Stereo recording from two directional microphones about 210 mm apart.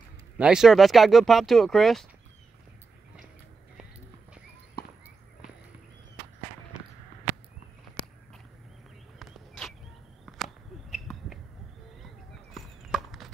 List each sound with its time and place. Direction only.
0.4 s speech: 5° right (ahead or behind)
4.8 s walk: 45° left (ahead or behind)
9.2 s a sound: centre (ahead or behind)
12.5 s horse: centre (ahead or behind)